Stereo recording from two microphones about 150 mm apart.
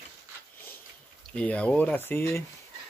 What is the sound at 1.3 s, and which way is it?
Speech, 10° left (ahead or behind).